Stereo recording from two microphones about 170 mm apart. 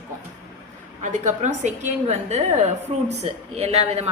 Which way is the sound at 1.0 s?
45° right (ahead or behind).